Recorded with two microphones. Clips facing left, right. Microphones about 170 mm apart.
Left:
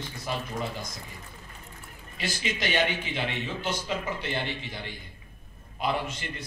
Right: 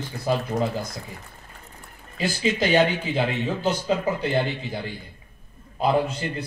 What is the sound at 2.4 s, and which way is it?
A man's voice, 35° right (ahead or behind).